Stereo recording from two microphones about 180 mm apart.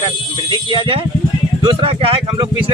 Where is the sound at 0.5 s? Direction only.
30° right (ahead or behind).